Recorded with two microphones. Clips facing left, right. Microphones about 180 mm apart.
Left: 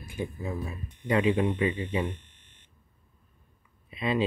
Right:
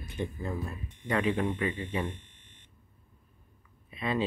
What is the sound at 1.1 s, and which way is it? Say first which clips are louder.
Speech: left 4 dB; 20° left (ahead or behind).